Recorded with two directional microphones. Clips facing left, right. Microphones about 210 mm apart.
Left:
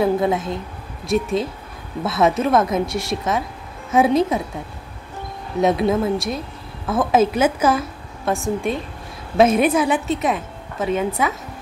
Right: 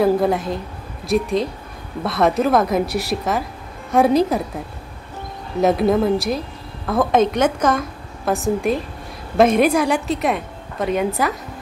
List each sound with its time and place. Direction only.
0.0 s a woman's voice: centre (ahead or behind)
5.6 s a woman's voice: centre (ahead or behind)